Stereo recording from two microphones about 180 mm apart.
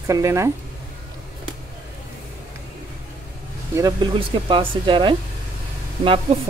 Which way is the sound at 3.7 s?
20° right (ahead or behind).